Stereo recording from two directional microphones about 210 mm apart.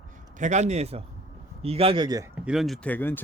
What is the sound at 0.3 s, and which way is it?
A man's voice, 35° right (ahead or behind).